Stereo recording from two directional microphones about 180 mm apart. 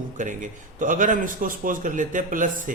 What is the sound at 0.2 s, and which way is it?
A man's voice, 45° right (ahead or behind).